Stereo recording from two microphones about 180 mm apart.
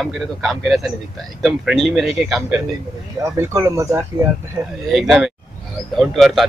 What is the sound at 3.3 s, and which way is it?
Speech, 15° right (ahead or behind).